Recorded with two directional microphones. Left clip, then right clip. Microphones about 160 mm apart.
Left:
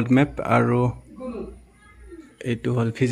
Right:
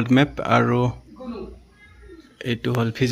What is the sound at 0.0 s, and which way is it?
Speech, 5° left (ahead or behind).